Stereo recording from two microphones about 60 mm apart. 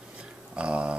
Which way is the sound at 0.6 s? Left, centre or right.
Centre.